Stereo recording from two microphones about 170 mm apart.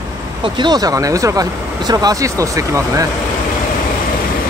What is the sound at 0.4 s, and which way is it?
Speech, 25° right (ahead or behind).